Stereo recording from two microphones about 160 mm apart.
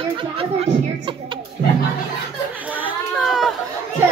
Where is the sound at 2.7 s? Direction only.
10° right (ahead or behind).